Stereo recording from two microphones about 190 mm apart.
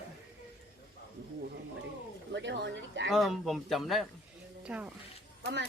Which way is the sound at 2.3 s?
65° right (ahead or behind).